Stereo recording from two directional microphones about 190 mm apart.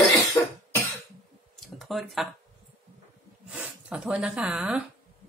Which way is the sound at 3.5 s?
5° right (ahead or behind).